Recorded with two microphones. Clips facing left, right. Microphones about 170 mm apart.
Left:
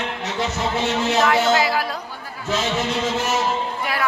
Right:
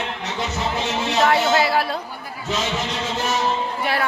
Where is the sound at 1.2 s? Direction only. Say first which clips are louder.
Right 2 dB; 30° right (ahead or behind).